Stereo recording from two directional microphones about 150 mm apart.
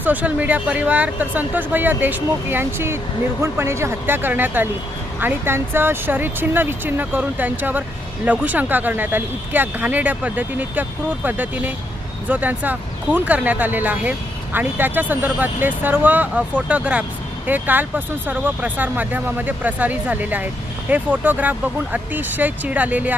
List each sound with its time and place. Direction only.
0.0 s speech: 10° right (ahead or behind)